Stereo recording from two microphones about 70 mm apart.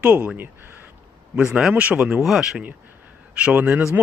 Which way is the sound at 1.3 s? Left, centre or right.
Centre.